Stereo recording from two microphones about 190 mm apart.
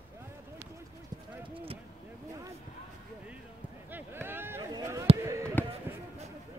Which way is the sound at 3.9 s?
10° right (ahead or behind).